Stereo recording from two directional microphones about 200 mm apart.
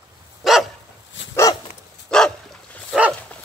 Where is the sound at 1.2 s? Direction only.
65° left (ahead or behind).